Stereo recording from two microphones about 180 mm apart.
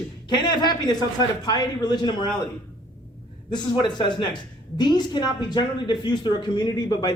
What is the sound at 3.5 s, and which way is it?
Speech, 25° left (ahead or behind).